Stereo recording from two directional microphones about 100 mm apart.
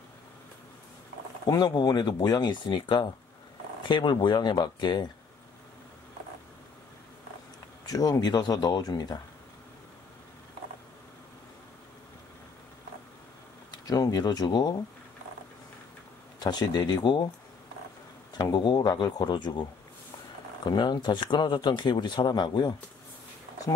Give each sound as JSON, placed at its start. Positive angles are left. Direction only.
{"t": 1.4, "sound": "speech", "side_deg": 40}
{"t": 7.8, "sound": "speech", "side_deg": 40}
{"t": 13.7, "sound": "speech", "side_deg": 40}
{"t": 16.3, "sound": "speech", "side_deg": 45}
{"t": 18.4, "sound": "speech", "side_deg": 45}
{"t": 20.6, "sound": "speech", "side_deg": 45}